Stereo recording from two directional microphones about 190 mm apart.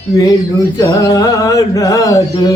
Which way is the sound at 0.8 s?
15° left (ahead or behind).